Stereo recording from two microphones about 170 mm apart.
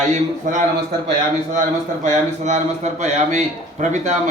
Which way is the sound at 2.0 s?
45° right (ahead or behind).